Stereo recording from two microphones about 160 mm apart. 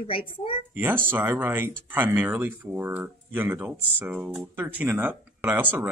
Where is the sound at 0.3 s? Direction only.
35° left (ahead or behind).